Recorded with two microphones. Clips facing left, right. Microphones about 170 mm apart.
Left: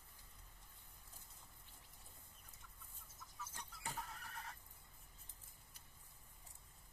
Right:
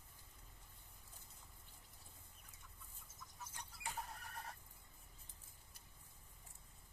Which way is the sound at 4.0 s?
40° right (ahead or behind).